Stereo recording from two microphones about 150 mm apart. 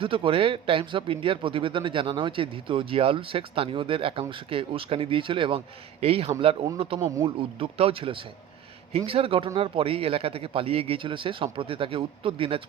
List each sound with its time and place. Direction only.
0.0 s speech: 35° right (ahead or behind)